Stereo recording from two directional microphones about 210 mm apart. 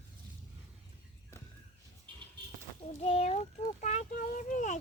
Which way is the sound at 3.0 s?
30° left (ahead or behind).